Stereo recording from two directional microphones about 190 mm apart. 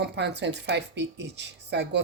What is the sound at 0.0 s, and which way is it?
A woman's voice, 65° right (ahead or behind).